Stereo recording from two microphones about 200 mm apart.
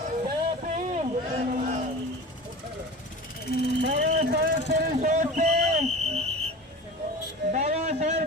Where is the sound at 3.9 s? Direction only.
55° right (ahead or behind); by 6.2 s 35° right (ahead or behind).